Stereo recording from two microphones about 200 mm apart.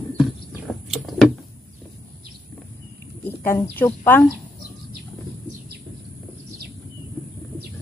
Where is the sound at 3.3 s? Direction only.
10° left (ahead or behind).